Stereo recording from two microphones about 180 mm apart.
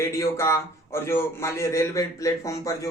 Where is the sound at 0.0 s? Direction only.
15° left (ahead or behind).